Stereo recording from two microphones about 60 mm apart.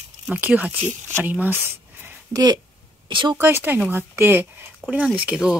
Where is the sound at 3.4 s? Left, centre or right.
Right.